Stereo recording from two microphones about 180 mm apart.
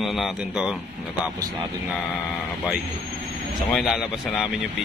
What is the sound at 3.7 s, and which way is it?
Speech, centre (ahead or behind).